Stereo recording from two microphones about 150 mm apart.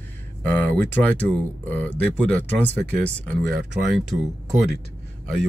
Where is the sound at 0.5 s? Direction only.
10° left (ahead or behind).